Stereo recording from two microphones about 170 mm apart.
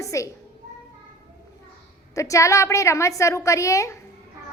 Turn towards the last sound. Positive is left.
turn(degrees=20)  # may be behind; listen again after turning